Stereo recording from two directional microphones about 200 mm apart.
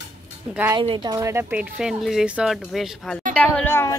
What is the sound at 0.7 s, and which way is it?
A woman's voice, 25° right (ahead or behind).